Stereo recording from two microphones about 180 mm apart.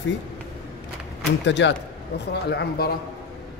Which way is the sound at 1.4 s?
80° left.